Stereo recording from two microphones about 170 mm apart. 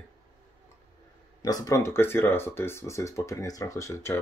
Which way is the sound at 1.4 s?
20° left (ahead or behind).